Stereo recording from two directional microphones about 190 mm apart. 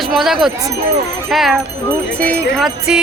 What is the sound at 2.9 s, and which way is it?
Speech, 5° right (ahead or behind).